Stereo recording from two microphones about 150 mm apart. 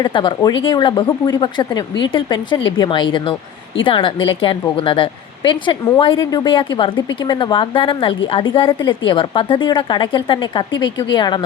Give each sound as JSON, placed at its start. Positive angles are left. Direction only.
{"t": 0.0, "sound": "a woman's voice", "side_deg": 35}